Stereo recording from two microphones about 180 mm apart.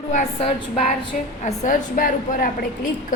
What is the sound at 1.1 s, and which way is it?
A woman's voice, 45° left (ahead or behind).